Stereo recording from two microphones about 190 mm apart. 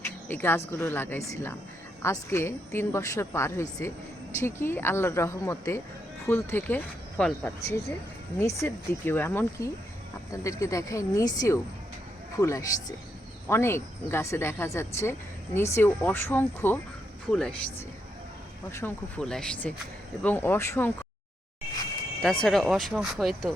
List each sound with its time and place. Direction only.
0.0 s a sound: 10° left (ahead or behind)
0.7 s a woman's voice: 10° left (ahead or behind)
22.4 s speech: centre (ahead or behind)